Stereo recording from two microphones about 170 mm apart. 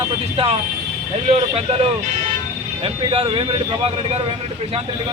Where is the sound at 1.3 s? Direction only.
40° right (ahead or behind).